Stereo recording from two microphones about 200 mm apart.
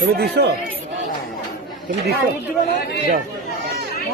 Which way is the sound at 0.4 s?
55° right (ahead or behind).